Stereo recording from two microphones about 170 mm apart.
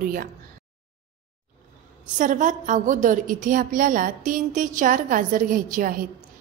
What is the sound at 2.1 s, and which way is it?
A woman's voice, 50° right (ahead or behind).